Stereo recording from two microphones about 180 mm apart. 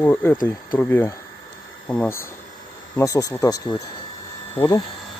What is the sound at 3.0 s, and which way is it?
Speech, 20° left (ahead or behind).